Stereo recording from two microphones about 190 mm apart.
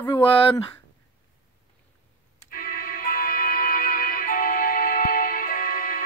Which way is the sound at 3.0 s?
50° left (ahead or behind).